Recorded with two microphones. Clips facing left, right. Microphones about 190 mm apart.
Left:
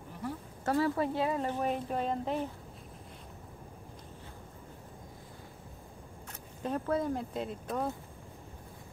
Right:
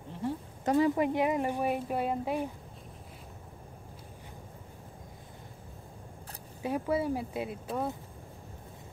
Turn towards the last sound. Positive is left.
turn(degrees=-5)  # may be behind; listen again after turning